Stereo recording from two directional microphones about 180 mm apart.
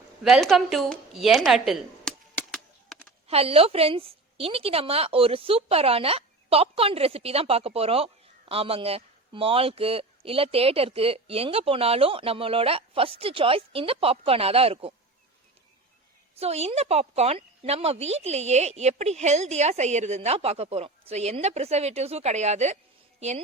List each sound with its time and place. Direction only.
0.2 s a sound: centre (ahead or behind)
3.2 s a woman's voice: 35° right (ahead or behind)
16.4 s a woman's voice: 35° right (ahead or behind)